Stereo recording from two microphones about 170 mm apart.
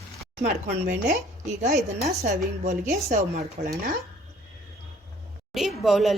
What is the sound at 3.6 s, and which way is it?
Speech, 55° right (ahead or behind).